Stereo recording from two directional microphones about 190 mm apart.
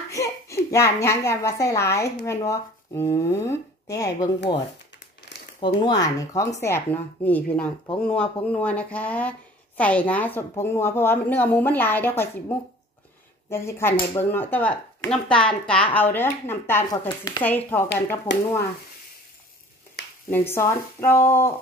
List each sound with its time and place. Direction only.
0.1 s speech: 15° left (ahead or behind)
5.8 s speech: 20° left (ahead or behind)
20.2 s speech: 10° left (ahead or behind)